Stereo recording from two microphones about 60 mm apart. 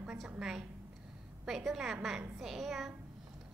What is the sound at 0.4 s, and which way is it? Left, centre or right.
A woman's voice, centre.